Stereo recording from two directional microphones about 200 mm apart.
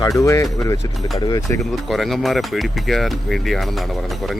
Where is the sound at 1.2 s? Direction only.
15° left (ahead or behind).